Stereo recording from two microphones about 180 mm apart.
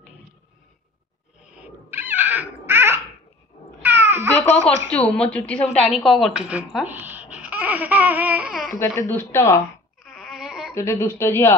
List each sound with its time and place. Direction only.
1.4 s babbling: 10° right (ahead or behind)
4.9 s a woman's voice: 5° left (ahead or behind)
8.6 s speech: 15° left (ahead or behind)
10.0 s a sound: centre (ahead or behind)
10.7 s speech: 15° left (ahead or behind)